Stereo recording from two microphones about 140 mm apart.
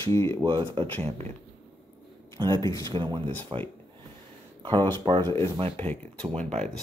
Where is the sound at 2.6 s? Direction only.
25° left (ahead or behind).